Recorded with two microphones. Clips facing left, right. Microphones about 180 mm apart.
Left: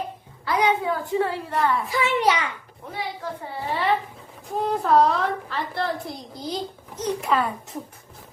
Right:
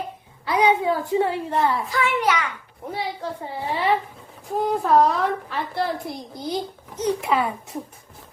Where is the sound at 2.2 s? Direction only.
25° left (ahead or behind).